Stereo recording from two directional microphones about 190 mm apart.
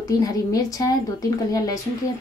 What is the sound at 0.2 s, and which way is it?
Speech, 20° left (ahead or behind).